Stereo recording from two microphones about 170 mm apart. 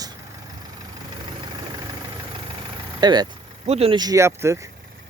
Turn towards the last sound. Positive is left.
turn(degrees=-15)  # may be behind; listen again after turning